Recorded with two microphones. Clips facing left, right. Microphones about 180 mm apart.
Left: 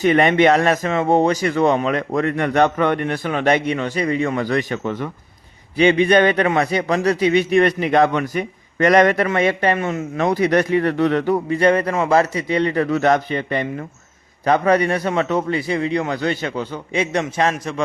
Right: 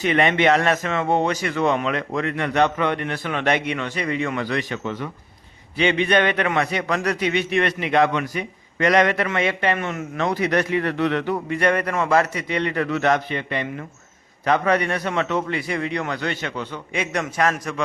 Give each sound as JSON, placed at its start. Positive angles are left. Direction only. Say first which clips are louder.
{"t": 0.0, "sound": "speech", "louder": "left 4 dB", "side_deg": 40}
{"t": 5.7, "sound": "speech", "louder": "left 5 dB", "side_deg": 40}
{"t": 11.4, "sound": "speech", "louder": "left 5 dB", "side_deg": 30}